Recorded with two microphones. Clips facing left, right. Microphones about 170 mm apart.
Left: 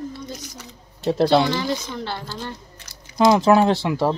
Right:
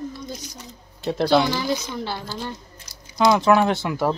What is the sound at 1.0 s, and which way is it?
Speech, 30° left (ahead or behind).